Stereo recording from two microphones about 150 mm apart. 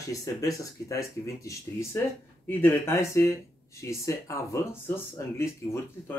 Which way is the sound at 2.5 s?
15° left (ahead or behind).